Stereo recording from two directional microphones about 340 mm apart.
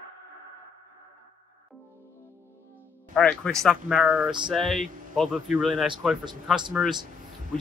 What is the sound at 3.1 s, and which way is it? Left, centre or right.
Speech, centre.